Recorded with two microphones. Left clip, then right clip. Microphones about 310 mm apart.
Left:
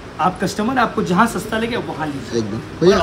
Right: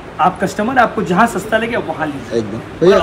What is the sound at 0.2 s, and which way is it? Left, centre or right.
Speech, centre.